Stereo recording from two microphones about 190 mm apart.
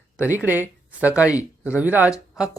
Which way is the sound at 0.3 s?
10° right (ahead or behind).